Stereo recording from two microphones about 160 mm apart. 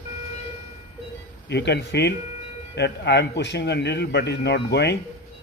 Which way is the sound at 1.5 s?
90° left.